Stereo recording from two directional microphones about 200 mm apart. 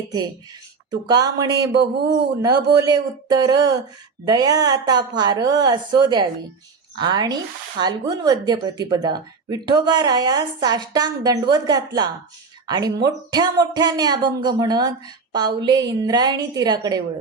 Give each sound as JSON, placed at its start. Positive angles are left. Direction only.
{"t": 0.9, "sound": "speech", "side_deg": -20}